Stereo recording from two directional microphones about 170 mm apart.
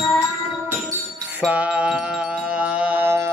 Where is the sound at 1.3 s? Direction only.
10° right (ahead or behind).